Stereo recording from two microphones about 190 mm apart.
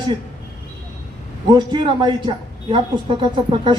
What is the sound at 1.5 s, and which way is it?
Speech, 25° right (ahead or behind).